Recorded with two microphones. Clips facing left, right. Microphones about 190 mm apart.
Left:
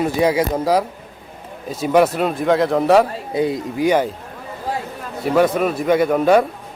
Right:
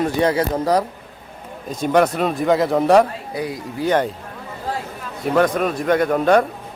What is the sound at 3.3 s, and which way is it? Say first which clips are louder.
Speech: left 7 dB; 25° left (ahead or behind).